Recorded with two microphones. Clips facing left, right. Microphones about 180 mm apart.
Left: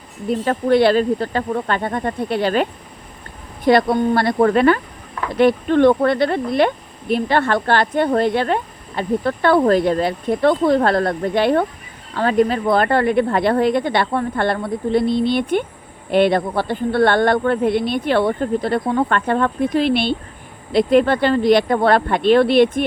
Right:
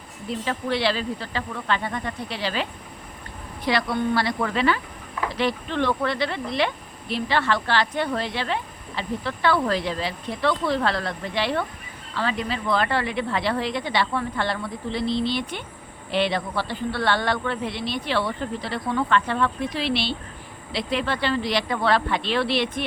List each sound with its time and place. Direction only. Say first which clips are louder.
0.3 s speech: left 10 dB; 50° left (ahead or behind)